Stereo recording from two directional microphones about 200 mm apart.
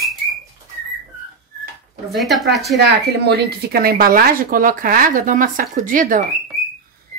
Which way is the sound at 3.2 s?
55° right (ahead or behind).